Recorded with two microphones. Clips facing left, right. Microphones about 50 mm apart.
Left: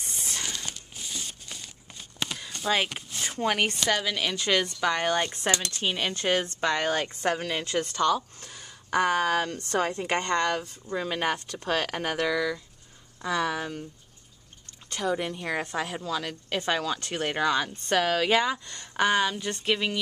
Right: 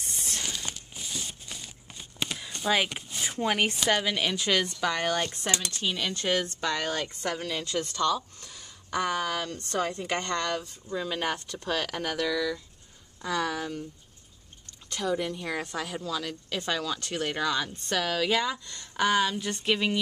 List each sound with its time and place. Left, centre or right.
0.3 s a sound: centre
4.3 s speech: centre
5.7 s a woman's voice: left
6.9 s a woman's voice: left
10.2 s a woman's voice: centre
13.2 s speech: centre
14.9 s a woman's voice: left
18.5 s speech: centre